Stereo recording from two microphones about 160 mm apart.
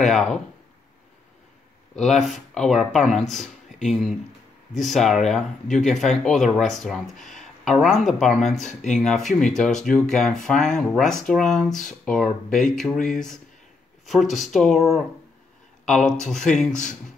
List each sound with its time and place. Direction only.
0.0 s speech: centre (ahead or behind)
2.0 s speech: centre (ahead or behind)